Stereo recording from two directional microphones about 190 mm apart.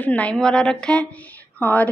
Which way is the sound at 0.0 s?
5° left (ahead or behind).